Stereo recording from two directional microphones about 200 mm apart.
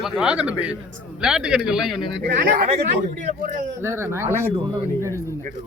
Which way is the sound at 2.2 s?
45° right (ahead or behind).